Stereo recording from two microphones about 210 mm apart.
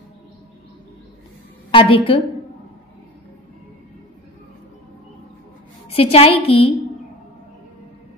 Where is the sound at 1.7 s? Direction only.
25° left (ahead or behind).